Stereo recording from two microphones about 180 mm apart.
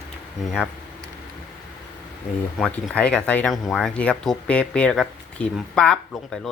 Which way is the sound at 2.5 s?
5° left (ahead or behind).